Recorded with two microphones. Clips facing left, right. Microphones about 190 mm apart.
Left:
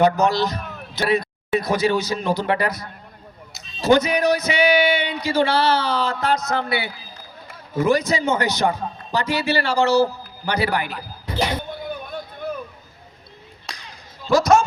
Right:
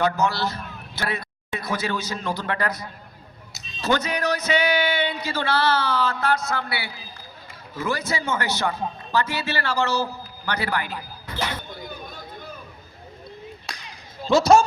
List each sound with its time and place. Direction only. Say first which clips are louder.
0.0 s a man's voice: left 5 dB; 20° left (ahead or behind)
3.8 s speech: left 7 dB; 10° left (ahead or behind)
11.3 s music: left 6 dB; 15° left (ahead or behind)
13.7 s a sound: left 4 dB; centre (ahead or behind)
14.3 s speech: even; 25° right (ahead or behind)